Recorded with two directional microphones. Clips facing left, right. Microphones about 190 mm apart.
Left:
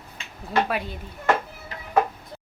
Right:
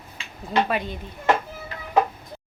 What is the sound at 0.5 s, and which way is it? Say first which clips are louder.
Speech: right 1 dB; 20° right (ahead or behind).